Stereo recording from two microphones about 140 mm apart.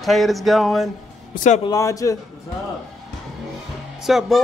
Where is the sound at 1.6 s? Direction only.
25° left (ahead or behind).